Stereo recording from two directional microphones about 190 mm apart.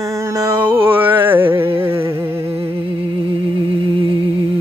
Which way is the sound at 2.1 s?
10° right (ahead or behind).